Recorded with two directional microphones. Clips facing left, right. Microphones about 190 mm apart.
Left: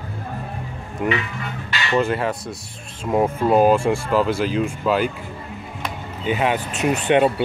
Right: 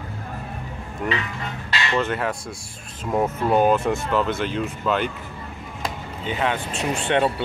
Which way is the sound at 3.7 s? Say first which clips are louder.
Left 3 dB; 30° left (ahead or behind).